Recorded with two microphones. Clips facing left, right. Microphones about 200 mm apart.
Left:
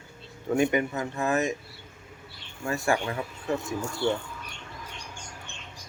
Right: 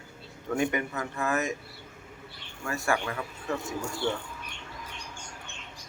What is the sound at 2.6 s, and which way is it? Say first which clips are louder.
Speech: left 3 dB; 30° left (ahead or behind).